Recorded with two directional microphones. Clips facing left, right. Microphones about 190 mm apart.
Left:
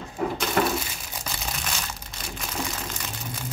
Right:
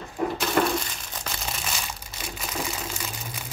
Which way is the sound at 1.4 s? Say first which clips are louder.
Even; 5° right (ahead or behind).